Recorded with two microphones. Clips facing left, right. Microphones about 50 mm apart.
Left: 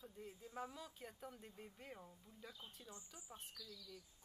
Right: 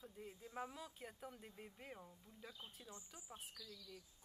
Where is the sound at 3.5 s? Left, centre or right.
Right.